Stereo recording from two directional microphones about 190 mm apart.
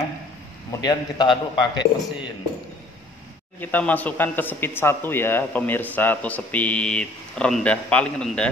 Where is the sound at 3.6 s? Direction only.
10° left (ahead or behind).